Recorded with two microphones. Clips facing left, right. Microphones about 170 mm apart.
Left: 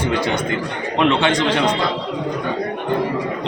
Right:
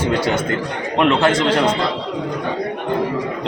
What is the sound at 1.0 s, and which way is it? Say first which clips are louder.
Speech: right 1 dB; centre (ahead or behind).